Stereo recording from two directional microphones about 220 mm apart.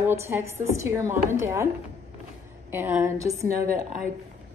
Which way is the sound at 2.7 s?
10° right (ahead or behind).